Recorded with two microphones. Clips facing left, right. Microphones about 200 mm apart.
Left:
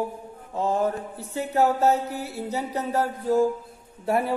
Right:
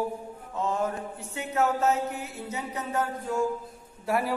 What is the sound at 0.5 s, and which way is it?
Mantra, 35° left (ahead or behind).